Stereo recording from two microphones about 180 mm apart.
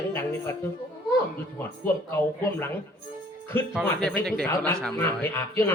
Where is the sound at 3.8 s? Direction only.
5° left (ahead or behind).